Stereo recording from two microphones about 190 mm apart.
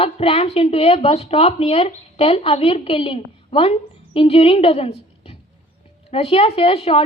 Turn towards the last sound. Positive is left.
turn(degrees=30)  # may be behind; listen again after turning